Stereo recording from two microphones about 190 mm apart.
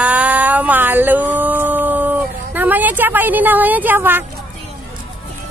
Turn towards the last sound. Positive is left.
turn(degrees=-10)  # may be behind; listen again after turning